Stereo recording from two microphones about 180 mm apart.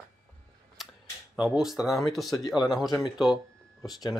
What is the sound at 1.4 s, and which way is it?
Speech, 5° right (ahead or behind).